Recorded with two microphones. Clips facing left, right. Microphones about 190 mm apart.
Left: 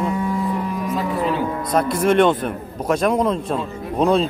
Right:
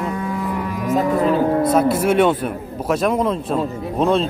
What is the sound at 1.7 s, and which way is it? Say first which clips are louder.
A man's voice: right 2 dB; 5° right (ahead or behind).